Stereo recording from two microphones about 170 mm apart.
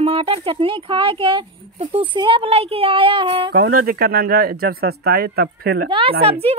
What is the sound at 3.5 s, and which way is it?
Speech, 60° right (ahead or behind).